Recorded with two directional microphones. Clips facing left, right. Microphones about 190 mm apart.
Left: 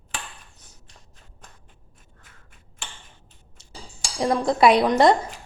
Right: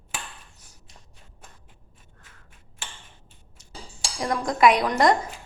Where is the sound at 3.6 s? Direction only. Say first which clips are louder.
Even; 30° left (ahead or behind).